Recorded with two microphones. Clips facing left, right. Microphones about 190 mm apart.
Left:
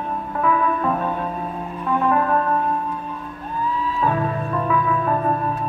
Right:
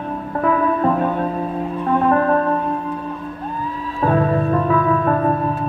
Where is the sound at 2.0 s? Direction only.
40° right (ahead or behind).